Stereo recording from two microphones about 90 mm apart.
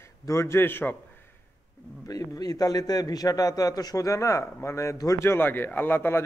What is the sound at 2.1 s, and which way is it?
A man's voice, 45° left (ahead or behind).